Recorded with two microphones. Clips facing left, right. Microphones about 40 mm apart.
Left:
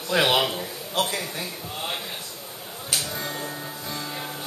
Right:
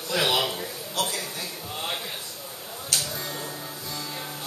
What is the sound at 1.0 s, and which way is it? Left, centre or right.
Speech, centre.